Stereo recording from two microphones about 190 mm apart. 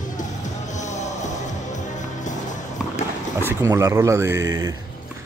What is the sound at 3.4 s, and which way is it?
Speech, 10° right (ahead or behind).